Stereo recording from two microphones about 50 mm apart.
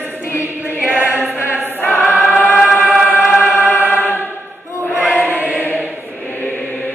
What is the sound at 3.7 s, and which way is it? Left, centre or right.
Choir, left.